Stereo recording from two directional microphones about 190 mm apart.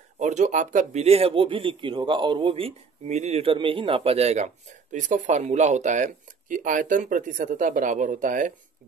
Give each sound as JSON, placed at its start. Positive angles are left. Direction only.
{"t": 0.2, "sound": "speech", "side_deg": -40}